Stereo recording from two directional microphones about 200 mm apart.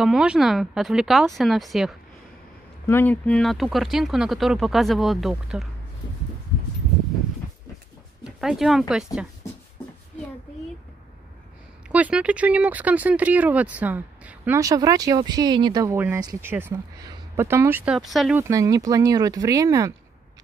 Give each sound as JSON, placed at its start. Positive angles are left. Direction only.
{"t": 0.0, "sound": "speech", "side_deg": -5}
{"t": 2.9, "sound": "speech", "side_deg": 10}
{"t": 8.2, "sound": "speech", "side_deg": 0}
{"t": 11.9, "sound": "speech", "side_deg": -5}
{"t": 18.4, "sound": "speech", "side_deg": -15}